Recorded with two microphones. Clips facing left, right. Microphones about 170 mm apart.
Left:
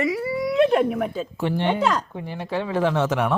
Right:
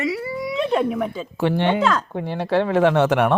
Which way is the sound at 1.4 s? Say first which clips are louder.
Right 4 dB; 75° right (ahead or behind).